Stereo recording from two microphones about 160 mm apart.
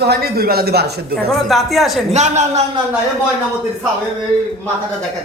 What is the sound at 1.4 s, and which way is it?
Speech, centre (ahead or behind).